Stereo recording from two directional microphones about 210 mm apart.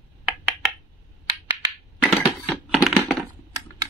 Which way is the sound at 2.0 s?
Centre (ahead or behind).